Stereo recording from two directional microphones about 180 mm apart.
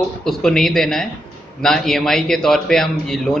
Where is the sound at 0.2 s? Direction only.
5° left (ahead or behind).